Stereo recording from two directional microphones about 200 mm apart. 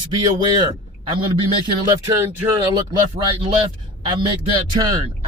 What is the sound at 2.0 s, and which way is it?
Speech, 15° right (ahead or behind).